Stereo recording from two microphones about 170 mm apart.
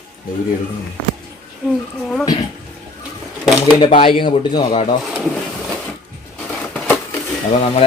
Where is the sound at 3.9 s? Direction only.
35° left (ahead or behind).